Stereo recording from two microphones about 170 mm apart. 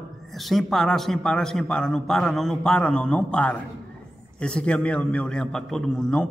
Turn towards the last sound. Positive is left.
turn(degrees=5)  # may be behind; listen again after turning